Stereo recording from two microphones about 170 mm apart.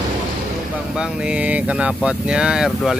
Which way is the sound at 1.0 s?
5° right (ahead or behind).